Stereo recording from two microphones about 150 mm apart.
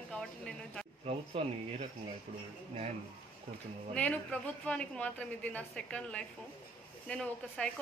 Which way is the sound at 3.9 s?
10° left (ahead or behind).